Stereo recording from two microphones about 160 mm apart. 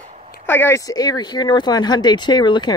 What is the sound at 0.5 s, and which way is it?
Speech, 15° left (ahead or behind).